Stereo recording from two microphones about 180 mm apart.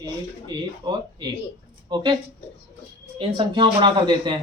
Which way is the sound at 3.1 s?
25° right (ahead or behind).